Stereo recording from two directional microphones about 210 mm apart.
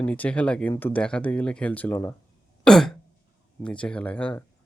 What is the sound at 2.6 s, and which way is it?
Throat clearing, centre (ahead or behind).